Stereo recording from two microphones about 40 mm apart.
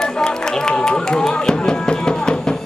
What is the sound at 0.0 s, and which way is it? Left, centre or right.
Music, centre.